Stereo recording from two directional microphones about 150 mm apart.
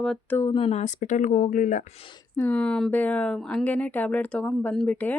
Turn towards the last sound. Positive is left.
turn(degrees=10)  # may be behind; listen again after turning